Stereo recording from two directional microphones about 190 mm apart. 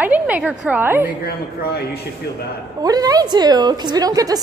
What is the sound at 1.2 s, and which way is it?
Speech, 55° left (ahead or behind).